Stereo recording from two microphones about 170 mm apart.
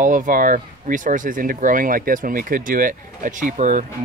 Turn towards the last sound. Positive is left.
turn(degrees=-50)  # may be behind; listen again after turning